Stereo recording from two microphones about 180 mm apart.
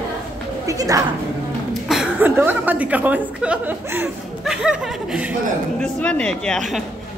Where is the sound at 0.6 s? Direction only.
20° right (ahead or behind).